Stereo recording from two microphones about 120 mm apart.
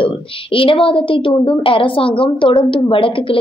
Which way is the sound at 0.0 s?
50° left (ahead or behind).